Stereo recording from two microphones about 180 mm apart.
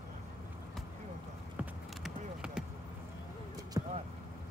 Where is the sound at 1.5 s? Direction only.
5° right (ahead or behind).